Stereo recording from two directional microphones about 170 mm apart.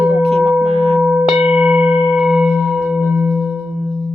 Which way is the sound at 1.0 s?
5° right (ahead or behind).